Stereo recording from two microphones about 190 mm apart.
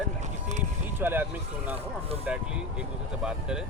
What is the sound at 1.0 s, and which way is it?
Speech, 10° right (ahead or behind).